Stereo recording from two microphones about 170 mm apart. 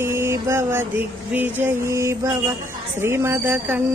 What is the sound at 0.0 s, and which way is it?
Music, 15° right (ahead or behind).